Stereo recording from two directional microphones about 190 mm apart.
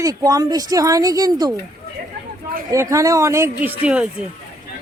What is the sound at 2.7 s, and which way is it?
A woman's voice, 15° right (ahead or behind).